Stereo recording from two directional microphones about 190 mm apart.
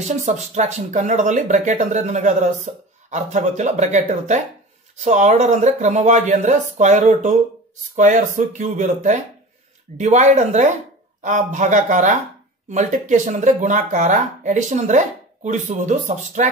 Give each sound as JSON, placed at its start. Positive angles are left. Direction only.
{"t": 0.0, "sound": "speech", "side_deg": -40}